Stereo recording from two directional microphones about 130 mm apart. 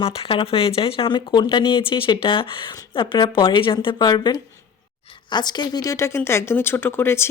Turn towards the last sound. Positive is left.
turn(degrees=20)  # may be behind; listen again after turning